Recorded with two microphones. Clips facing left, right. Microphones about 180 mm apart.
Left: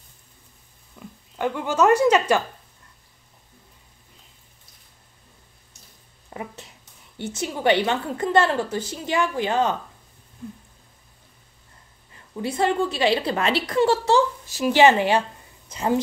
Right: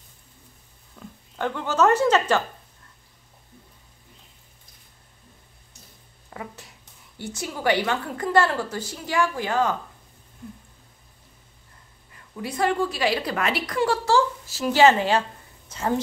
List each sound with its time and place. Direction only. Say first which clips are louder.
0.9 s speech: left 1 dB; 10° left (ahead or behind)
6.3 s a woman's voice: left 3 dB; 20° left (ahead or behind)
12.4 s a woman's voice: left 2 dB; 25° left (ahead or behind)